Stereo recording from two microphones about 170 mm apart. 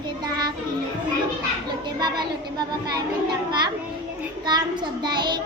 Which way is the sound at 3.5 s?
25° right (ahead or behind).